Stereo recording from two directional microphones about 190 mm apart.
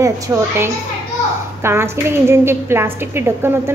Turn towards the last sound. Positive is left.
turn(degrees=-10)  # may be behind; listen again after turning